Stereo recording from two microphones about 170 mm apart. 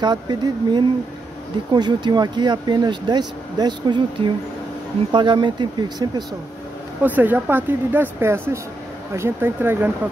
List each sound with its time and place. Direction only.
0.0 s speech: 25° right (ahead or behind)
7.0 s speech: 10° right (ahead or behind)